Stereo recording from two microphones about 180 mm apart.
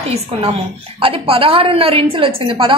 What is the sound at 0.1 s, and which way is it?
A woman's voice, 30° right (ahead or behind).